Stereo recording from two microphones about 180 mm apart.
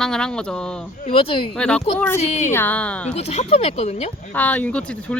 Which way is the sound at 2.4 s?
10° left (ahead or behind).